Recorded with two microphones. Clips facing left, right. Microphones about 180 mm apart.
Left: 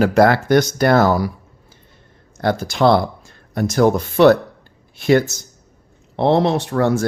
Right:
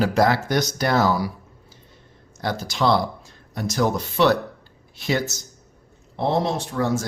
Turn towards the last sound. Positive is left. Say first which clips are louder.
# left 6 dB
turn(degrees=60)  # may be behind; listen again after turning